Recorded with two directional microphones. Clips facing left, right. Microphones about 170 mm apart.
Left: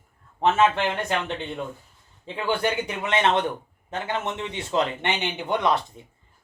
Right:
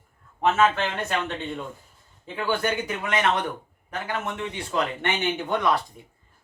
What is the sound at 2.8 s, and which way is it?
A man's voice, 25° left (ahead or behind).